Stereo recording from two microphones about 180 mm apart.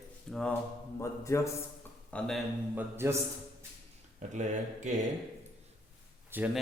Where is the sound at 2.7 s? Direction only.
15° right (ahead or behind).